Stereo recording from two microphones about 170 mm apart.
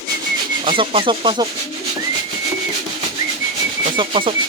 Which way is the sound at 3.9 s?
30° right (ahead or behind).